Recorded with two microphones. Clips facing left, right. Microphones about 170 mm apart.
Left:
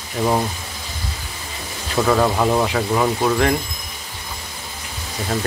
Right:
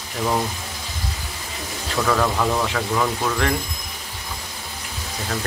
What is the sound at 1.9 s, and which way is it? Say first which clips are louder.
Speech: left 4 dB; 25° left (ahead or behind).